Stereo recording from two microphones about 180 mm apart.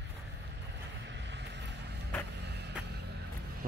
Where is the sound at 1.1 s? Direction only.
75° right (ahead or behind).